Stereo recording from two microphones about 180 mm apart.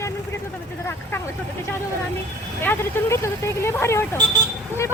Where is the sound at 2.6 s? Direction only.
15° left (ahead or behind).